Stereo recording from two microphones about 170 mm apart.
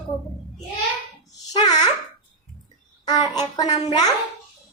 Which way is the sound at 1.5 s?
25° left (ahead or behind).